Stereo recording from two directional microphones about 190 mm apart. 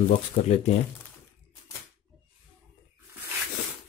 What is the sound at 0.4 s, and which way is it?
Speech, 30° left (ahead or behind).